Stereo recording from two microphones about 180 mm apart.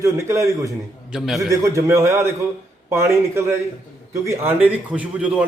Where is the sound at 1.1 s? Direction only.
Centre (ahead or behind).